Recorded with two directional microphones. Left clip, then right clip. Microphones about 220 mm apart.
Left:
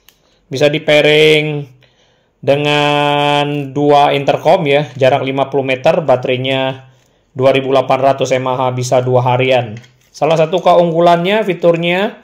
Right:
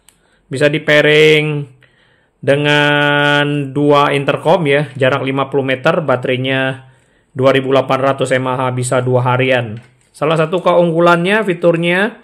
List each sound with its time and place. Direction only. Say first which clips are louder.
0.5 s speech: left 1 dB; 15° right (ahead or behind)